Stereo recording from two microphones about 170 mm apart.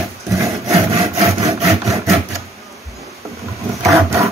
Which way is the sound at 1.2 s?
35° right (ahead or behind).